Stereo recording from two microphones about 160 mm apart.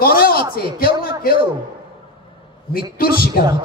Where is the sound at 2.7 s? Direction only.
70° left (ahead or behind).